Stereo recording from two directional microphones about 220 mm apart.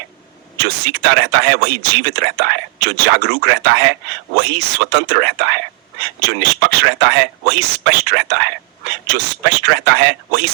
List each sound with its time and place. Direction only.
0.6 s speech: 50° right (ahead or behind)